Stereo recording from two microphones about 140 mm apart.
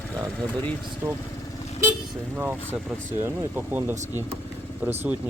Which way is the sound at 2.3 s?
10° right (ahead or behind).